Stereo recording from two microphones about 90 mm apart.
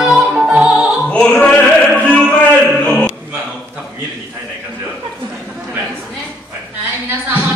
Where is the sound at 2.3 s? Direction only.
10° left (ahead or behind).